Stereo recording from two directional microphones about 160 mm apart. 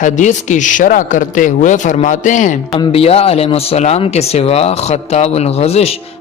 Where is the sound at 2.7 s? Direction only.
35° left (ahead or behind).